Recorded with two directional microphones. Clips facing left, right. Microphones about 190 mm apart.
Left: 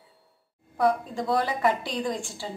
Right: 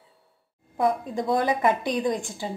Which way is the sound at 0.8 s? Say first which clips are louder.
Even; 20° right (ahead or behind).